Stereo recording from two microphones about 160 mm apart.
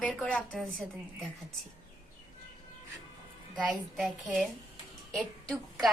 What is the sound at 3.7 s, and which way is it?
A woman's voice, 5° right (ahead or behind).